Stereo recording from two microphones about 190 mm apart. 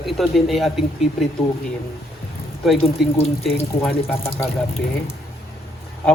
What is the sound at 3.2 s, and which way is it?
Speech, 35° left (ahead or behind).